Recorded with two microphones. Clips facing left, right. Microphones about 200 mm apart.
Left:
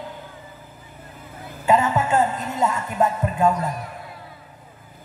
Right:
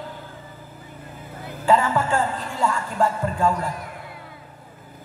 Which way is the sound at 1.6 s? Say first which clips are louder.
Even; 20° left (ahead or behind).